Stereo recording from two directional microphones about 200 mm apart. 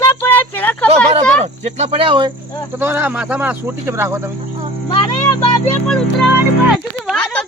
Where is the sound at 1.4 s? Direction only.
35° right (ahead or behind).